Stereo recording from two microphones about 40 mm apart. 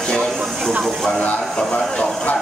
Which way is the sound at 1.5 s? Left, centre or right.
Left.